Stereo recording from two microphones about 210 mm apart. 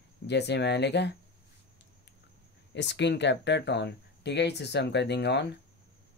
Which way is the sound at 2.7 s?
55° left (ahead or behind).